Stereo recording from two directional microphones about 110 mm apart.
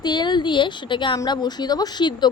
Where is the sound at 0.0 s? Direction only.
40° left (ahead or behind).